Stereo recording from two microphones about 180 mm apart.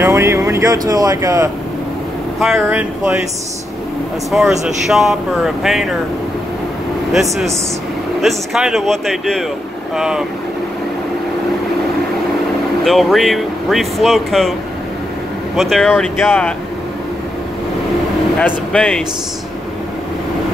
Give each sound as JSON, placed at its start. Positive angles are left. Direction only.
{"t": 0.0, "sound": "speech", "side_deg": -15}
{"t": 2.6, "sound": "speech", "side_deg": -10}
{"t": 4.3, "sound": "speech", "side_deg": 0}
{"t": 7.1, "sound": "speech", "side_deg": 0}
{"t": 12.8, "sound": "speech", "side_deg": 0}
{"t": 15.5, "sound": "speech", "side_deg": 0}
{"t": 18.4, "sound": "speech", "side_deg": 5}